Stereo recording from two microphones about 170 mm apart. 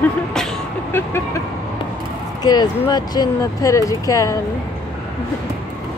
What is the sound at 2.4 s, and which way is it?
Speech, 25° left (ahead or behind).